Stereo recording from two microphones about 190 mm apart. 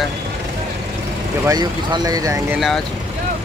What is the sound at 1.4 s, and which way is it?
Speech, 20° right (ahead or behind).